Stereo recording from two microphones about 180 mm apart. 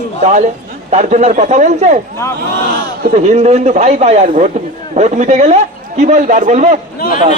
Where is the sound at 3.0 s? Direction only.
40° right (ahead or behind).